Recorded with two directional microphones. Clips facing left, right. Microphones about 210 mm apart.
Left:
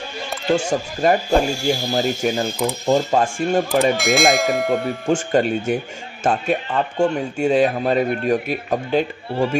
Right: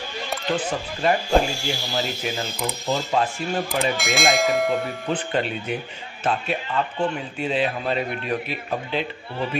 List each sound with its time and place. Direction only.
0.5 s speech: 45° left (ahead or behind)
3.9 s speech: centre (ahead or behind)
5.0 s speech: 45° left (ahead or behind)